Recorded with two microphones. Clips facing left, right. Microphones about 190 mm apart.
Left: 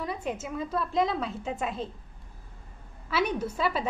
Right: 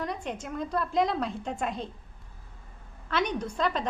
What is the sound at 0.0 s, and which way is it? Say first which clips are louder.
A woman's voice: left 1 dB; 5° left (ahead or behind).